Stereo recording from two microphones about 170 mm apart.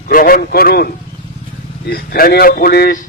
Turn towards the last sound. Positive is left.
turn(degrees=60)  # may be behind; listen again after turning